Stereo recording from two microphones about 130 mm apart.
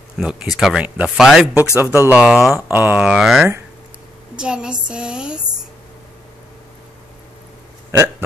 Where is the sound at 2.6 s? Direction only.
15° right (ahead or behind).